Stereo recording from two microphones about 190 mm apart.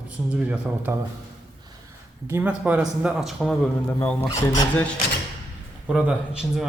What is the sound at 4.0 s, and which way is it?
Speech, 10° left (ahead or behind).